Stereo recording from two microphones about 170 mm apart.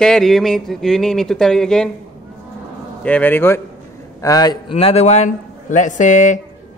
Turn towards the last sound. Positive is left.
turn(degrees=45)  # may be behind; listen again after turning